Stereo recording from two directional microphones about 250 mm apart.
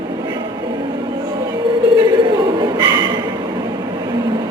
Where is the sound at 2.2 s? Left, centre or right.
Centre.